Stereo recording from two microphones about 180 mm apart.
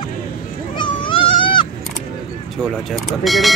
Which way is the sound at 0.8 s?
30° left (ahead or behind).